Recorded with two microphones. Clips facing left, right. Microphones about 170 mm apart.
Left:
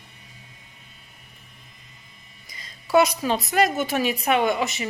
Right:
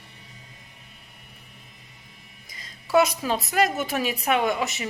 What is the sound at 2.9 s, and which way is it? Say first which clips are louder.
A woman's voice: left 2 dB; centre (ahead or behind).